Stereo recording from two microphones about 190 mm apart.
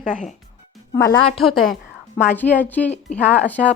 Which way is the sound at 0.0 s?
40° left (ahead or behind).